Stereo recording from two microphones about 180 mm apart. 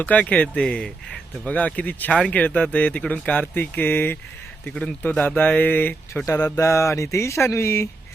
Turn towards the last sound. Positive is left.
turn(degrees=15)  # may be behind; listen again after turning